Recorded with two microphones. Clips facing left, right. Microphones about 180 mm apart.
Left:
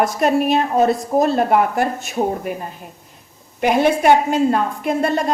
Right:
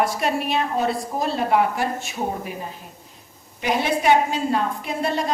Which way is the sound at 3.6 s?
55° left (ahead or behind).